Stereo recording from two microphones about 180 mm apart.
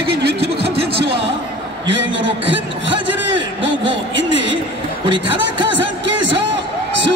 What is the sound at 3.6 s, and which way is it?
Speech, 90° right.